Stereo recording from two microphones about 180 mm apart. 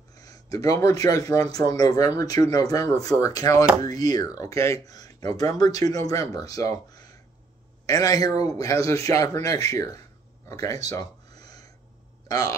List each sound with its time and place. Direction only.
0.1 s speech: 20° left (ahead or behind)
10.5 s a sound: 20° left (ahead or behind)
12.3 s speech: 20° left (ahead or behind)